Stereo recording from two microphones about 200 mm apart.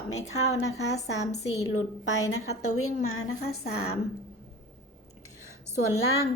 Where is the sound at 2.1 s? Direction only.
90° left.